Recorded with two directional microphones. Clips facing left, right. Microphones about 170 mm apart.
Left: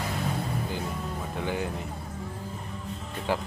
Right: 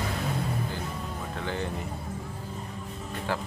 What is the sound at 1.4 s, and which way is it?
Speech, 15° left (ahead or behind).